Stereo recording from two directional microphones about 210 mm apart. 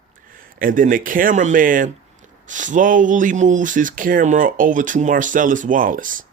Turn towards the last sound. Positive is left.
turn(degrees=-40)  # may be behind; listen again after turning